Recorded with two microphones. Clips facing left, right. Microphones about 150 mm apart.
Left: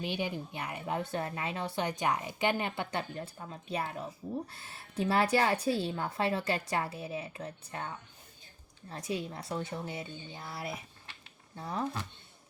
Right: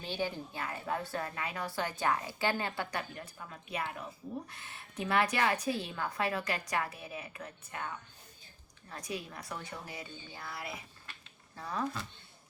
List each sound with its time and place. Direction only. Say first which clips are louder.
0.0 s a woman's voice: left 2 dB; 15° left (ahead or behind)